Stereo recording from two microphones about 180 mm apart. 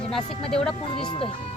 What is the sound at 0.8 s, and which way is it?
Speech, 30° left (ahead or behind).